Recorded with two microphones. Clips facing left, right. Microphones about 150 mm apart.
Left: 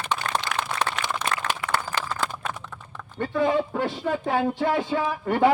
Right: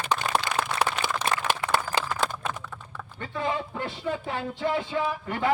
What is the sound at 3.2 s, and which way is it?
A man's voice, 55° left (ahead or behind).